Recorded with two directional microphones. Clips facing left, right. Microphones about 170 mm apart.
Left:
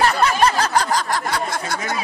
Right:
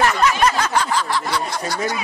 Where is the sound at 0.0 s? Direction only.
35° left (ahead or behind); by 2.0 s 50° left (ahead or behind).